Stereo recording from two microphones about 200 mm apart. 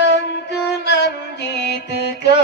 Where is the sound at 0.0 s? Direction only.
60° left (ahead or behind).